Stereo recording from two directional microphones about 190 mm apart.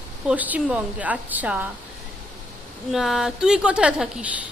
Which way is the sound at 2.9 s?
Centre (ahead or behind).